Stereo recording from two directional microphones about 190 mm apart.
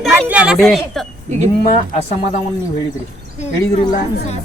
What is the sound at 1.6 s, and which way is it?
Speech, 40° left (ahead or behind).